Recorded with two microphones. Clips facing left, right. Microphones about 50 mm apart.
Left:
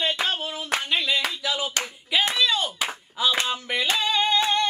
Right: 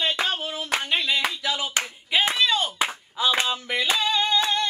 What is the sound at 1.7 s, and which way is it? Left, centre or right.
Clapping, right.